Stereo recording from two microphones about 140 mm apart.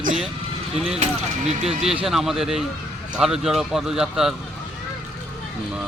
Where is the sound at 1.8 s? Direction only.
40° right (ahead or behind).